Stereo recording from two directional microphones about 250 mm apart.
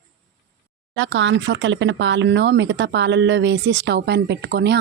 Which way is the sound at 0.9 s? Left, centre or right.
Right.